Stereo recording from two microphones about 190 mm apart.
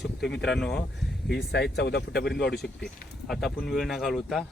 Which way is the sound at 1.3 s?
60° left (ahead or behind).